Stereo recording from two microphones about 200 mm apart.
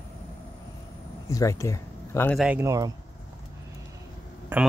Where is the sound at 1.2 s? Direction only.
15° left (ahead or behind).